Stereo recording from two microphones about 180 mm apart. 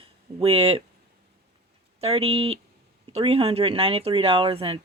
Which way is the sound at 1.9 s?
35° right (ahead or behind).